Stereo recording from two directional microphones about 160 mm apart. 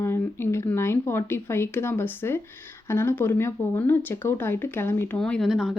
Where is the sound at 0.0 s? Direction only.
15° left (ahead or behind).